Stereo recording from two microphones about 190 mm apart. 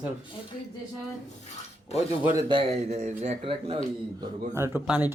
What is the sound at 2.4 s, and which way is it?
Speech, 30° right (ahead or behind).